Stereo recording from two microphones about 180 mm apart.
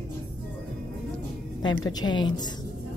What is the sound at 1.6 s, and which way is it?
Speech, 25° left (ahead or behind).